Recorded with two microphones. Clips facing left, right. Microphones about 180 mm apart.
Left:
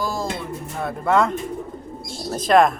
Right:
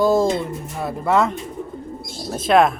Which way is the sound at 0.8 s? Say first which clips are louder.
Right 1 dB; 5° right (ahead or behind).